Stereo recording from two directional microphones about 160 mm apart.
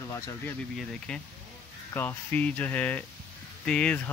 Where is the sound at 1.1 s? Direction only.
5° left (ahead or behind).